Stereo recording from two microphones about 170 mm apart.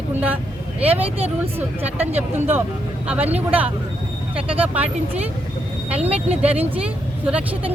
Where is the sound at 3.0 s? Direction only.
10° right (ahead or behind).